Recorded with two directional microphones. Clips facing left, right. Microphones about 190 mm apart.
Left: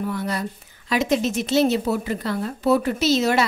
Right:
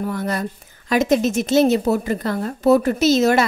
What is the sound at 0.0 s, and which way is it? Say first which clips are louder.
A woman's voice: right 2 dB; 45° right (ahead or behind).